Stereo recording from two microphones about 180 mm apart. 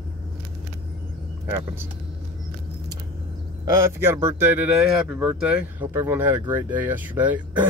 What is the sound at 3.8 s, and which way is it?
Speech, 15° right (ahead or behind).